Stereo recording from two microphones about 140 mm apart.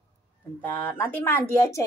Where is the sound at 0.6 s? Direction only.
10° left (ahead or behind).